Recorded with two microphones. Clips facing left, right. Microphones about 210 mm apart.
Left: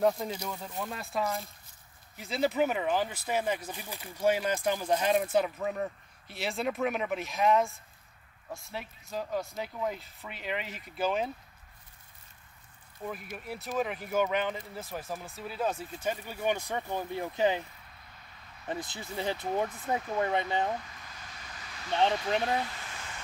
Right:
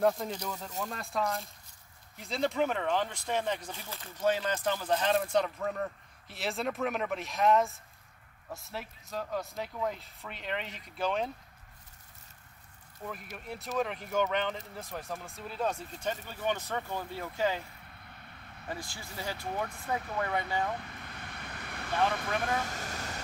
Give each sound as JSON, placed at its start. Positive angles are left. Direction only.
{"t": 0.0, "sound": "speech", "side_deg": 5}
{"t": 13.0, "sound": "speech", "side_deg": 5}
{"t": 18.7, "sound": "speech", "side_deg": 20}
{"t": 20.8, "sound": "vehicle", "side_deg": -60}
{"t": 22.4, "sound": "vehicle", "side_deg": -45}